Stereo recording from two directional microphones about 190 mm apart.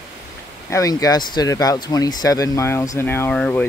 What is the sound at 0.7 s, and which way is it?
Speech, 15° left (ahead or behind).